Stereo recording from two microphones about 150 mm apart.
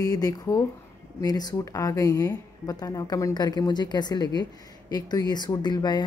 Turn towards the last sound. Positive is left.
turn(degrees=30)  # may be behind; listen again after turning